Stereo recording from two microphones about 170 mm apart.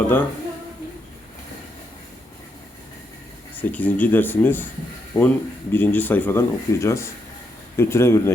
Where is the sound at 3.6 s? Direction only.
10° left (ahead or behind).